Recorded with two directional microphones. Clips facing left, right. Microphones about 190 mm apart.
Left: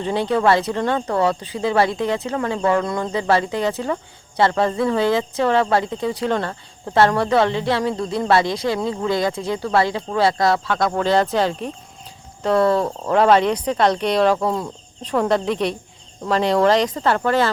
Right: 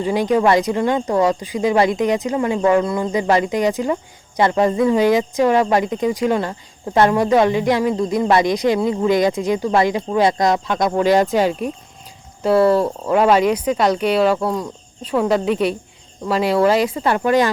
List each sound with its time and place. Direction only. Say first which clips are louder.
0.0 s speech: right 2 dB; 10° right (ahead or behind)